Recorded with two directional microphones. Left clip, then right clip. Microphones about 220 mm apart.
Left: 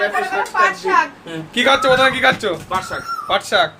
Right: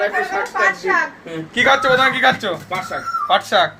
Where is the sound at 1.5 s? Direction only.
15° left (ahead or behind).